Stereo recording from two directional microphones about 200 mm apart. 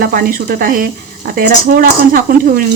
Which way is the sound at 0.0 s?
45° right (ahead or behind).